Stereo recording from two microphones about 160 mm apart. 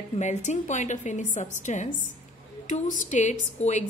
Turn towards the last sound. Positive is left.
turn(degrees=45)  # may be behind; listen again after turning